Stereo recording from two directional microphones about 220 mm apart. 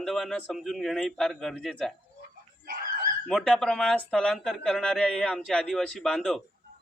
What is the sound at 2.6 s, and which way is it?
Dog, 40° right (ahead or behind).